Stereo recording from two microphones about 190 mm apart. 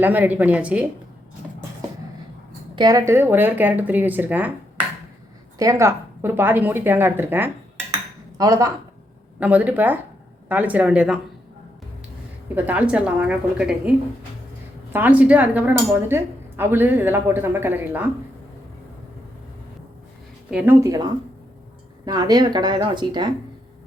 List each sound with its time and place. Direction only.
0.0 s speech: 10° right (ahead or behind)
2.7 s speech: 20° right (ahead or behind)
5.5 s speech: 15° right (ahead or behind)
12.5 s speech: 10° right (ahead or behind)
14.9 s speech: 10° right (ahead or behind)
20.5 s speech: 10° right (ahead or behind); by 23.3 s 25° right (ahead or behind)